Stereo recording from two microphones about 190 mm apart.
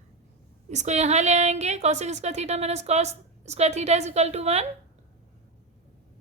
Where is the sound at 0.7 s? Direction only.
40° right (ahead or behind).